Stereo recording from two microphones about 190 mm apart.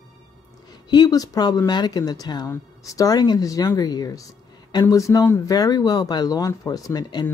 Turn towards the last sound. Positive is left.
turn(degrees=20)  # may be behind; listen again after turning